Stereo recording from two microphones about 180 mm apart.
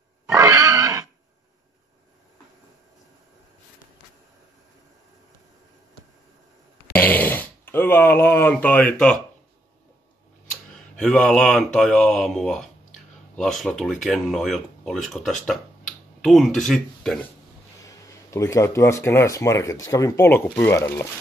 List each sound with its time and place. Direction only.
0.3 s pig: 15° right (ahead or behind)
6.9 s a sound: 10° left (ahead or behind)
10.7 s speech: 5° left (ahead or behind)
17.8 s speech: 15° left (ahead or behind)